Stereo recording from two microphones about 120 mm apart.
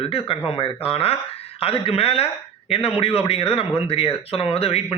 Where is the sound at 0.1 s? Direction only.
50° left (ahead or behind).